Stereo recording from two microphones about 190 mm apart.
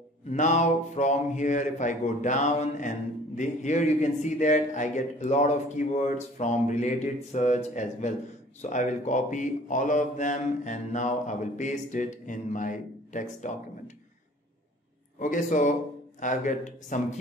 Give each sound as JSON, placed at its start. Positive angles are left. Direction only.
{"t": 0.3, "sound": "a man's voice", "side_deg": 40}
{"t": 15.1, "sound": "a man's voice", "side_deg": 45}